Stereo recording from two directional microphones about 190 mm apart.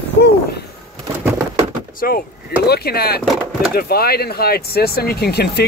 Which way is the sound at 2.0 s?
50° left (ahead or behind).